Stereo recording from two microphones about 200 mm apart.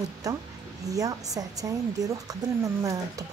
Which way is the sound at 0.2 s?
15° right (ahead or behind).